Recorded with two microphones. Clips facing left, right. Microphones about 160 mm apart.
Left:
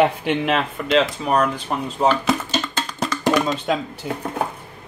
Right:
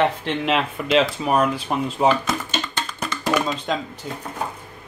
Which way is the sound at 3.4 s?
5° left (ahead or behind).